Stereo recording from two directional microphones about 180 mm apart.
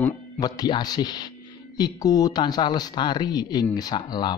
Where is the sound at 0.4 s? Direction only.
25° left (ahead or behind).